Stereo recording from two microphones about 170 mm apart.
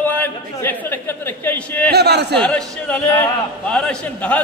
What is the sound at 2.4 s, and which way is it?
Speech, 10° left (ahead or behind).